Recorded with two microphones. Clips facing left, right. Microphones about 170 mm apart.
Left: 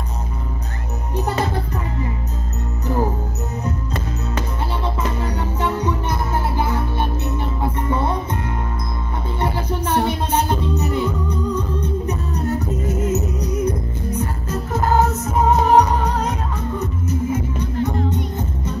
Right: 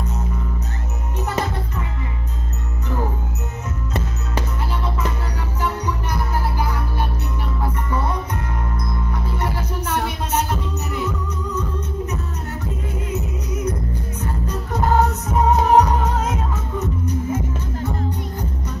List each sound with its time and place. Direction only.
5.6 s music: 25° left (ahead or behind)
9.4 s music: 30° left (ahead or behind)
14.1 s music: 5° left (ahead or behind)